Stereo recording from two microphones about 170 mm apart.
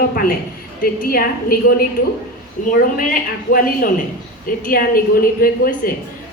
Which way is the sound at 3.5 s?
55° left (ahead or behind).